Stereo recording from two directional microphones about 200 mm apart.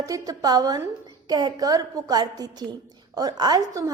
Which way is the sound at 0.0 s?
20° right (ahead or behind).